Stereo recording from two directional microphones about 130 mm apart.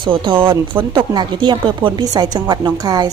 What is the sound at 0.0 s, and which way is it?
A woman's voice, 40° right (ahead or behind).